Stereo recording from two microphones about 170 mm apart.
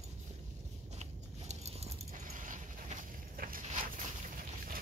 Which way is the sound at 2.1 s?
50° right (ahead or behind).